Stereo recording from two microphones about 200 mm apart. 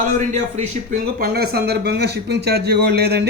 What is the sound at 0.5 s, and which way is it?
A man's voice, 35° right (ahead or behind).